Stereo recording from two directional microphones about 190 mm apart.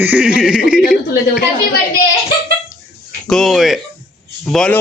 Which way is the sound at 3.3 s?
Centre (ahead or behind).